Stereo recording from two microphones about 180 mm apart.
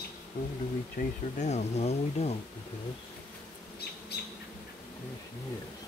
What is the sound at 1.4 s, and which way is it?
Speech, 40° left (ahead or behind).